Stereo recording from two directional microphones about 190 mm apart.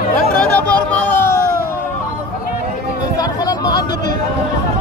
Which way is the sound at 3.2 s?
20° left (ahead or behind).